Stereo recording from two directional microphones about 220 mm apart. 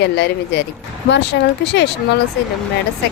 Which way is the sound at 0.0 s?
50° left (ahead or behind).